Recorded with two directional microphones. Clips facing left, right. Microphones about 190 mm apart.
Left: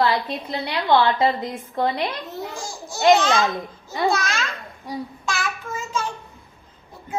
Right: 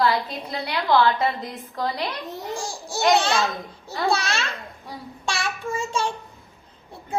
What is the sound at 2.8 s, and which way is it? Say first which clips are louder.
Babbling: left 4 dB; 30° right (ahead or behind).